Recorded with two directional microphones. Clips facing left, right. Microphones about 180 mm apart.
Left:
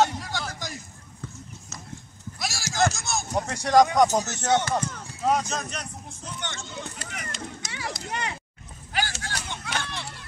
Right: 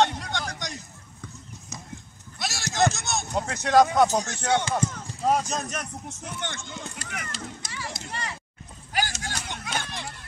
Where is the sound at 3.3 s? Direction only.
10° left (ahead or behind).